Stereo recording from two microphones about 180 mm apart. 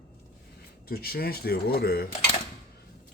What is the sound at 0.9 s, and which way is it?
Speech, 60° left (ahead or behind).